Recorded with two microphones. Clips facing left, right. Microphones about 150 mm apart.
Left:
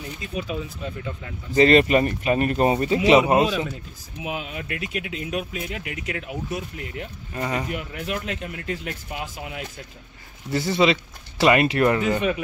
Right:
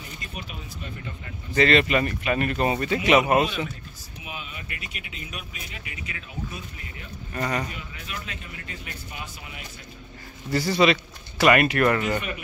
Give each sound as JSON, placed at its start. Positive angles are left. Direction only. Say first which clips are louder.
{"t": 1.6, "sound": "speech", "louder": "left 4 dB", "side_deg": 40}
{"t": 4.2, "sound": "speech", "louder": "left 9 dB", "side_deg": 90}
{"t": 7.3, "sound": "speech", "louder": "left 1 dB", "side_deg": 15}
{"t": 7.7, "sound": "a man's voice", "louder": "left 9 dB", "side_deg": 60}
{"t": 10.5, "sound": "speech", "louder": "even", "side_deg": 20}